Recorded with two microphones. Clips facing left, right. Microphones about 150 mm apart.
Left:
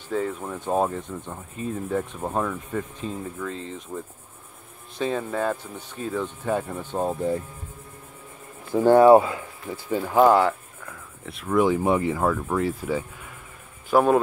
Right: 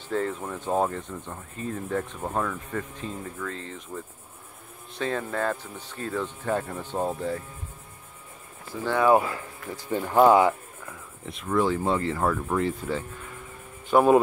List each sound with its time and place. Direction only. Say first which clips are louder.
0.1 s speech: left 1 dB; 5° left (ahead or behind)
8.7 s speech: left 11 dB; 45° left (ahead or behind)
9.8 s speech: left 1 dB; 5° left (ahead or behind)
11.5 s speech: left 4 dB; 15° left (ahead or behind); by 14.2 s centre (ahead or behind)